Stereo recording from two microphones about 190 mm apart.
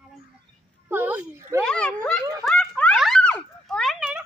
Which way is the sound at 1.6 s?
5° left (ahead or behind).